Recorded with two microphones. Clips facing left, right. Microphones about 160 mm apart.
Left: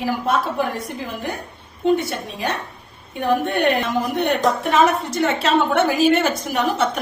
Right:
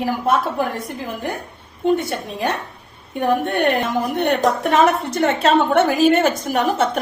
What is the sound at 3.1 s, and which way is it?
A woman's voice, 50° right (ahead or behind).